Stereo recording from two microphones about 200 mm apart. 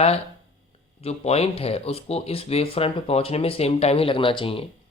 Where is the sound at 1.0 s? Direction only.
30° left (ahead or behind).